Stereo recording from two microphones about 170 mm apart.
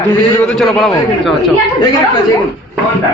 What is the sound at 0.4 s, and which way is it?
Speech, centre (ahead or behind).